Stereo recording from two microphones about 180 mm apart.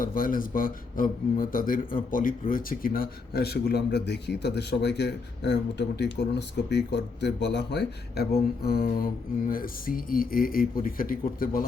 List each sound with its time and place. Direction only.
0.0 s a man's voice: 50° left (ahead or behind)